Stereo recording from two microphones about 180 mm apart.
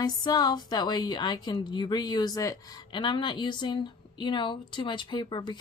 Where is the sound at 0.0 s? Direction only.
20° left (ahead or behind).